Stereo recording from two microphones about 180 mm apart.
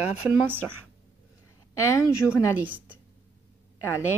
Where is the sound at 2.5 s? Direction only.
10° right (ahead or behind).